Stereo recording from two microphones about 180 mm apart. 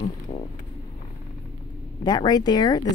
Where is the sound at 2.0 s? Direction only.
20° left (ahead or behind).